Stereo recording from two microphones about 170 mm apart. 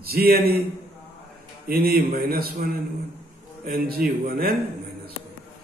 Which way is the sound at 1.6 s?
60° right (ahead or behind).